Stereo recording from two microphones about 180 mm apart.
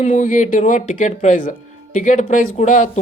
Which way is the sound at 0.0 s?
45° left (ahead or behind).